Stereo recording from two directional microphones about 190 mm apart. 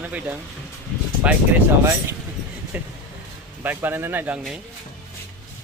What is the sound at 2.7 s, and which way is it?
Speech, 10° right (ahead or behind).